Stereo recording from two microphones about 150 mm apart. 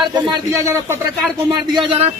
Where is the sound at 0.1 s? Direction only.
25° right (ahead or behind).